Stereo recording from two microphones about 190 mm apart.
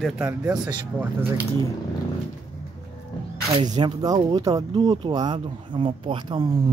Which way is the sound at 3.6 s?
25° right (ahead or behind).